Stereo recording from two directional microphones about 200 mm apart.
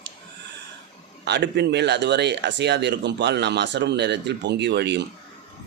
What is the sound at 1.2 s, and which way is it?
Speech, 60° right (ahead or behind).